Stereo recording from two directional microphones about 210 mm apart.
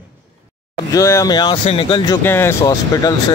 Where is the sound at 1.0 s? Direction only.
15° left (ahead or behind).